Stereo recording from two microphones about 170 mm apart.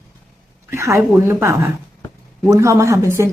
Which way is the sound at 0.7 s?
15° right (ahead or behind).